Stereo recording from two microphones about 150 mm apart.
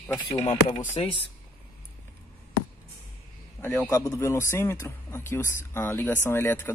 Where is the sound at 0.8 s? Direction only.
45° left (ahead or behind).